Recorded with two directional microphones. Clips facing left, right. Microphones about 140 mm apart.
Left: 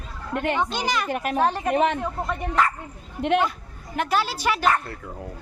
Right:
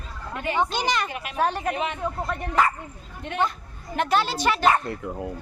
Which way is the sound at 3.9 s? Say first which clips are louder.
Right 1 dB; 5° left (ahead or behind).